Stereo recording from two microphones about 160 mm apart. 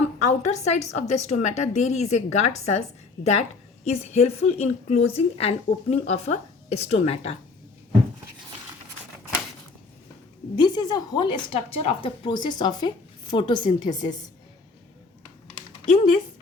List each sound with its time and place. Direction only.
0.3 s a woman's voice: 45° left (ahead or behind)
3.8 s a woman's voice: 40° left (ahead or behind)
10.5 s a woman's voice: 25° left (ahead or behind)